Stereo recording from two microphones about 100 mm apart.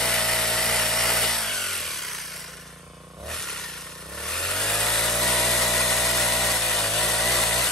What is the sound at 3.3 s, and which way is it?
Vehicle, 5° left (ahead or behind).